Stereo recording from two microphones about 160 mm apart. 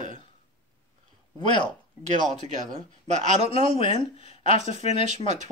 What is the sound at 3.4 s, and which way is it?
Speech, 35° left (ahead or behind).